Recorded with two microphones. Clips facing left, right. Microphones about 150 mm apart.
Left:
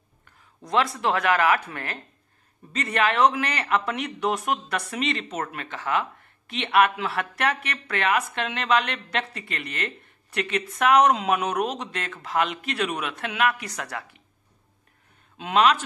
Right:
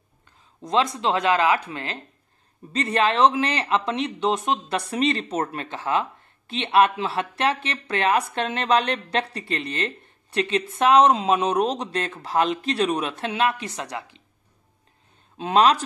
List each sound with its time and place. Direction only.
0.6 s speech: 20° right (ahead or behind)
15.3 s a man's voice: 35° right (ahead or behind)